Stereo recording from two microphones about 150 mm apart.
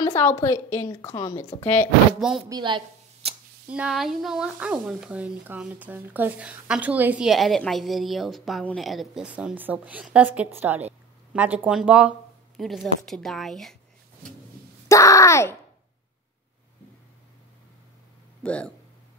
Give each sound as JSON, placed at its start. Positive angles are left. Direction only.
{"t": 0.0, "sound": "a woman's voice", "side_deg": 15}
{"t": 2.1, "sound": "speech", "side_deg": 0}
{"t": 2.5, "sound": "speech", "side_deg": -30}
{"t": 3.6, "sound": "speech", "side_deg": -5}
{"t": 14.6, "sound": "wail", "side_deg": -75}
{"t": 14.9, "sound": "speech", "side_deg": 20}
{"t": 18.4, "sound": "speech", "side_deg": 10}